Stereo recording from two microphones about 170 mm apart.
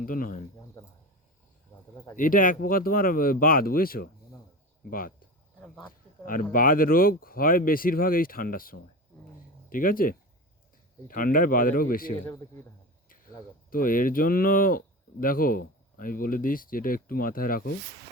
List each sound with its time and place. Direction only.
0.0 s speech: 55° left (ahead or behind)
0.8 s a sound: 15° left (ahead or behind)
2.1 s speech: 50° left (ahead or behind)
5.5 s speech: 5° left (ahead or behind)
5.9 s speech: 55° left (ahead or behind)
13.7 s speech: 55° left (ahead or behind)